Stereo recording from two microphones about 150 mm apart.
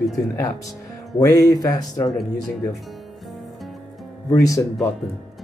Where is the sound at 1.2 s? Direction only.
20° left (ahead or behind).